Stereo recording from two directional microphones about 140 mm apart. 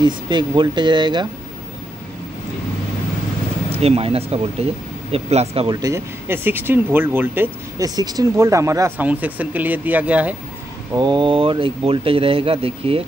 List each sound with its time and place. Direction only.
0.0 s speech: 30° right (ahead or behind)
3.7 s speech: 45° right (ahead or behind)
5.7 s speech: 25° right (ahead or behind)
7.8 s speech: 30° right (ahead or behind); by 10.3 s 10° right (ahead or behind)
11.0 s speech: 35° right (ahead or behind)